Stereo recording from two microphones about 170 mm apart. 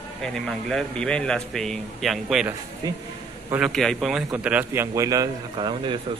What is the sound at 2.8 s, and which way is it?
Speech, 25° right (ahead or behind).